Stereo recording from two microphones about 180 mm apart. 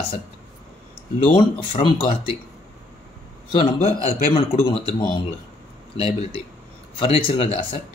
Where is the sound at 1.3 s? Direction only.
30° left (ahead or behind).